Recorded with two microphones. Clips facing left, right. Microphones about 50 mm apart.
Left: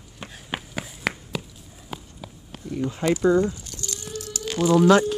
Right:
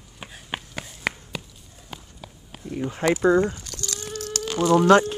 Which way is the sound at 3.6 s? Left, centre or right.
Right.